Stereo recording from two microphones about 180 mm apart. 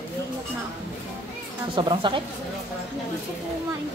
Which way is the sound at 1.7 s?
25° right (ahead or behind).